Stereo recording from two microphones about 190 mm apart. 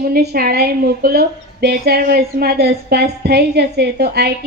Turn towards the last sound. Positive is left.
turn(degrees=-60)  # may be behind; listen again after turning